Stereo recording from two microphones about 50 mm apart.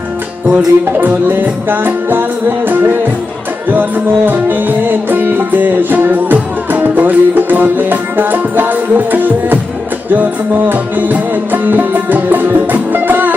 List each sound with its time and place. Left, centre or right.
0.5 s music: right
10.7 s music: right